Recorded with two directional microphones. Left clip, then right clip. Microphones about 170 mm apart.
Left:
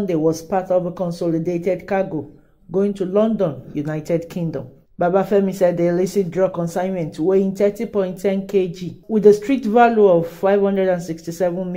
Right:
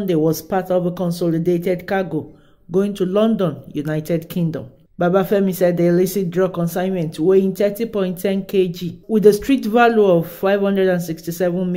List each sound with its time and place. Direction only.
0.0 s speech: 30° right (ahead or behind)